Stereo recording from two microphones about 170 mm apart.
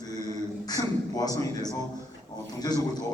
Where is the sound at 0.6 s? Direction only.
20° left (ahead or behind).